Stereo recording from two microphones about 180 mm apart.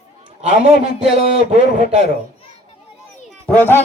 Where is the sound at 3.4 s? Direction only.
10° left (ahead or behind).